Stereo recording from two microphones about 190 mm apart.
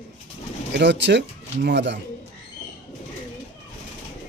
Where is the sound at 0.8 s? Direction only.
70° right (ahead or behind).